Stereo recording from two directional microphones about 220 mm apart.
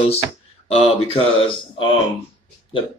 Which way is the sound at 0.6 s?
25° left (ahead or behind).